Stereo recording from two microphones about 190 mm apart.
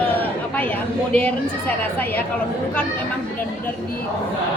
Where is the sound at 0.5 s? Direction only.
10° left (ahead or behind).